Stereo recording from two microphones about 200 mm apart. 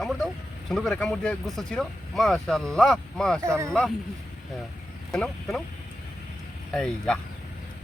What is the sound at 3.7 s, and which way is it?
Speech, 5° left (ahead or behind).